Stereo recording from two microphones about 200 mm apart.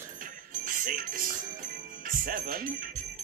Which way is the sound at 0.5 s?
45° right (ahead or behind).